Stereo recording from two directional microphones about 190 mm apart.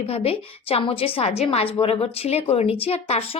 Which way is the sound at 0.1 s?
30° left (ahead or behind).